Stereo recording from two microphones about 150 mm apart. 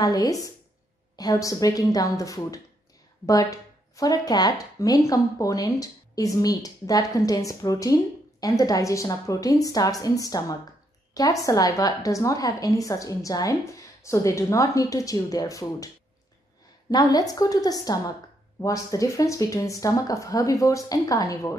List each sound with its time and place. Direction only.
0.0 s speech: 25° left (ahead or behind)
16.9 s speech: 25° left (ahead or behind)